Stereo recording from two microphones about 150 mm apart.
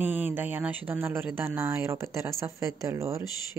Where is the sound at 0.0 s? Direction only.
10° right (ahead or behind).